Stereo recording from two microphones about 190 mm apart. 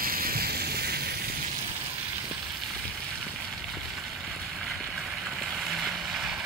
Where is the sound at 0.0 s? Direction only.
50° right (ahead or behind).